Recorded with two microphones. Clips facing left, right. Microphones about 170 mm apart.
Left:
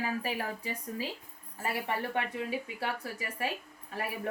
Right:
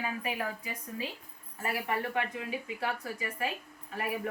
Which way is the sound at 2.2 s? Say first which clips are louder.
Left 1 dB; 30° left (ahead or behind).